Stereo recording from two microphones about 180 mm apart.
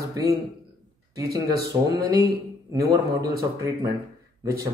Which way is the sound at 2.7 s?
20° right (ahead or behind).